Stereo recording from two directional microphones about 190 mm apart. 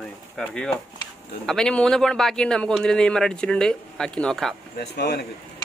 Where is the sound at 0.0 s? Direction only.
5° left (ahead or behind).